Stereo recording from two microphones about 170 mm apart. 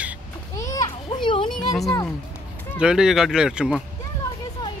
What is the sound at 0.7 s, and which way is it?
Children playing, 25° left (ahead or behind).